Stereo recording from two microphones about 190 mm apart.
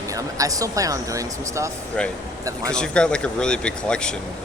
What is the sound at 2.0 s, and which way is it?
Speech, 5° left (ahead or behind).